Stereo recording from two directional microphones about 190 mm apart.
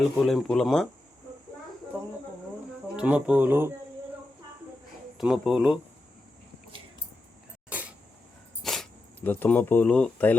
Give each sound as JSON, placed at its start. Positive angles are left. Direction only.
{"t": 0.3, "sound": "speech", "side_deg": 0}
{"t": 2.9, "sound": "speech", "side_deg": -5}
{"t": 5.1, "sound": "speech", "side_deg": 0}
{"t": 7.7, "sound": "a sound", "side_deg": -10}
{"t": 8.6, "sound": "speech", "side_deg": 0}